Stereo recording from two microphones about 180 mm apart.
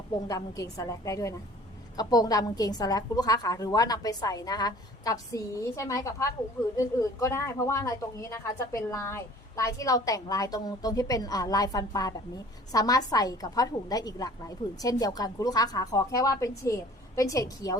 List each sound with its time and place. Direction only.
0.3 s a woman's voice: 20° left (ahead or behind)